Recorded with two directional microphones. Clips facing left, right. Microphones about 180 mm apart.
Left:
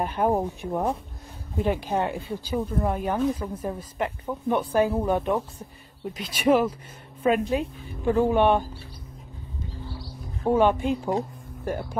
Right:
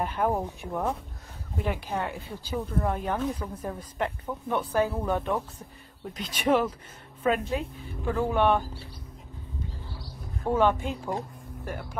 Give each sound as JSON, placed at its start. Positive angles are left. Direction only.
{"t": 0.0, "sound": "a woman's voice", "side_deg": 25}
{"t": 2.5, "sound": "a woman's voice", "side_deg": 10}
{"t": 10.4, "sound": "a woman's voice", "side_deg": 15}
{"t": 11.6, "sound": "speech", "side_deg": 30}